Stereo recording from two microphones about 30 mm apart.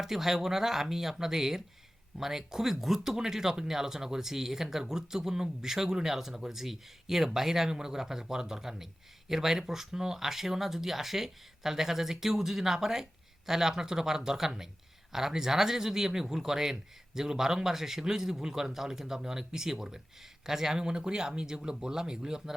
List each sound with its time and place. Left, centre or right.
0.0 s speech: centre
7.7 s speech: right